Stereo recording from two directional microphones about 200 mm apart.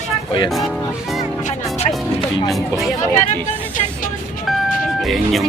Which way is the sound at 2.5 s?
Centre (ahead or behind).